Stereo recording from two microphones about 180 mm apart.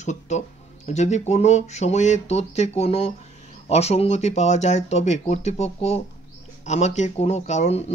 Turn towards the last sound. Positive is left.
turn(degrees=40)  # may be behind; listen again after turning